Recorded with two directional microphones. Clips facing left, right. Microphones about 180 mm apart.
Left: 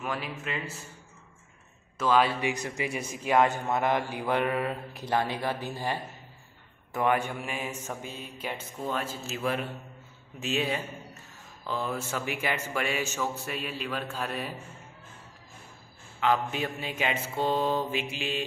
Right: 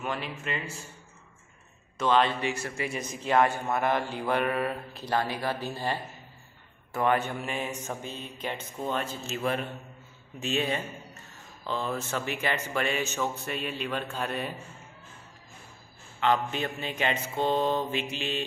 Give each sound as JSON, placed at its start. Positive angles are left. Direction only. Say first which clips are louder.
{"t": 0.0, "sound": "mantra", "louder": "even", "side_deg": 0}
{"t": 2.0, "sound": "mantra", "louder": "even", "side_deg": 5}
{"t": 2.4, "sound": "a man's voice", "louder": "left 1 dB", "side_deg": 15}
{"t": 8.0, "sound": "mantra", "louder": "right 1 dB", "side_deg": 10}
{"t": 11.6, "sound": "a man's voice", "louder": "right 1 dB", "side_deg": 5}
{"t": 16.2, "sound": "mantra", "louder": "even", "side_deg": 5}